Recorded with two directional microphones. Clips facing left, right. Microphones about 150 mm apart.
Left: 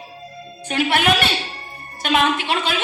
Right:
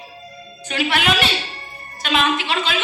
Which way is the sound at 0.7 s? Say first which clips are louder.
Left 2 dB; 50° left (ahead or behind).